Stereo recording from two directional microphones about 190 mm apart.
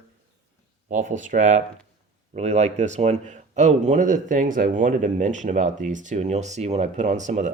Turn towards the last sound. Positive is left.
turn(degrees=-40)  # may be behind; listen again after turning